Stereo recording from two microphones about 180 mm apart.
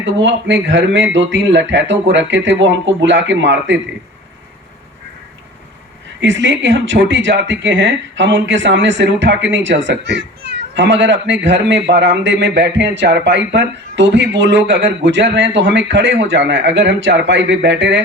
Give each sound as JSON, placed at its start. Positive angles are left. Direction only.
{"t": 0.0, "sound": "speech", "side_deg": -90}
{"t": 6.1, "sound": "a man's voice", "side_deg": -90}